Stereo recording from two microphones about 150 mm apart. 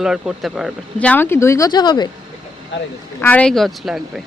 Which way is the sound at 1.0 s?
10° left (ahead or behind).